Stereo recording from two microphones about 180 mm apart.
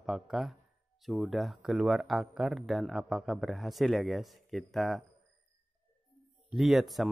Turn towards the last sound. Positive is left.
turn(degrees=0)  # may be behind; listen again after turning